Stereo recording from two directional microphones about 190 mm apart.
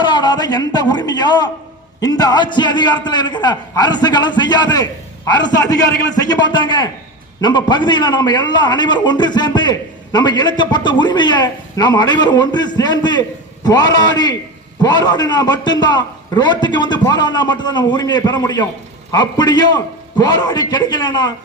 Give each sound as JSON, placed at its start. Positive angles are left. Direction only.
{"t": 0.0, "sound": "a man's voice", "side_deg": 25}